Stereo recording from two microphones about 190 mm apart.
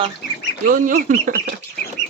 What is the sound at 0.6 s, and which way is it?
Speech, 45° right (ahead or behind).